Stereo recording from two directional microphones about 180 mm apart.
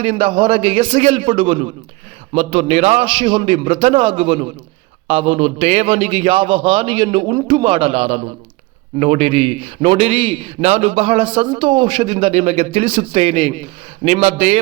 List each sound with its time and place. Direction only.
0.0 s a man's voice: 30° right (ahead or behind)